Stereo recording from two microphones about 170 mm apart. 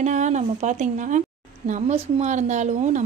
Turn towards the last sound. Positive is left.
turn(degrees=-45)  # may be behind; listen again after turning